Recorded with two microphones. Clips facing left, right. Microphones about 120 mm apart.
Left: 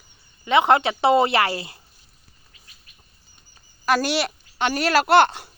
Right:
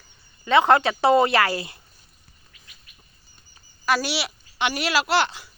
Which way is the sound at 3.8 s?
45° left (ahead or behind).